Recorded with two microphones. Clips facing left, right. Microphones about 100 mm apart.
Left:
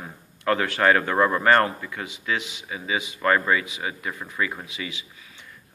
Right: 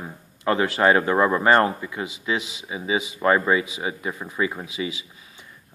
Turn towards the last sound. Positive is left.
turn(degrees=-25)  # may be behind; listen again after turning